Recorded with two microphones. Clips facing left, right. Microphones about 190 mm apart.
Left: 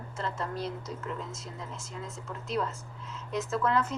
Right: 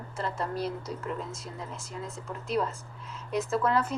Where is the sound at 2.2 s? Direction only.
30° right (ahead or behind).